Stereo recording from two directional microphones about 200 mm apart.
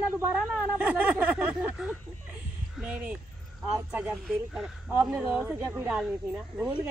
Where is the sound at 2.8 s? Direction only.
5° right (ahead or behind).